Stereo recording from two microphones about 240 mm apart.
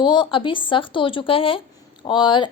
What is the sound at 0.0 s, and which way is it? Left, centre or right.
A woman's voice, centre.